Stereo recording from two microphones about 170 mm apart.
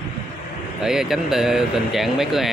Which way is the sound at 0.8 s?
Centre (ahead or behind).